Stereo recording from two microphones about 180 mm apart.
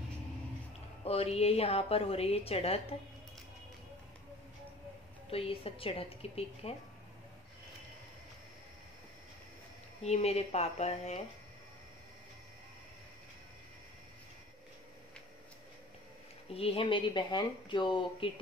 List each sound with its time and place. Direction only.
1.0 s a woman's voice: 35° left (ahead or behind)
5.3 s a woman's voice: 30° left (ahead or behind)
10.0 s a woman's voice: 35° left (ahead or behind)
16.5 s speech: 30° left (ahead or behind)